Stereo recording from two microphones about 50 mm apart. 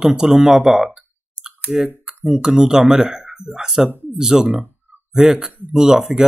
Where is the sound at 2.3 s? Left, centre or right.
Centre.